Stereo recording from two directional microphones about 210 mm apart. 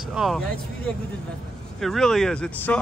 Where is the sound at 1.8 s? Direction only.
Centre (ahead or behind).